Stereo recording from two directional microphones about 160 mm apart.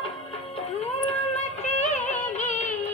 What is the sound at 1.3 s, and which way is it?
Music, 45° left (ahead or behind).